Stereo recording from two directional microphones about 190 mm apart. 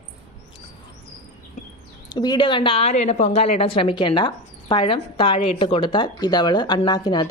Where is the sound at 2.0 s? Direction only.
20° left (ahead or behind).